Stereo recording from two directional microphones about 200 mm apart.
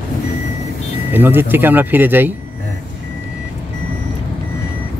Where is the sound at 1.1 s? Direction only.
10° right (ahead or behind).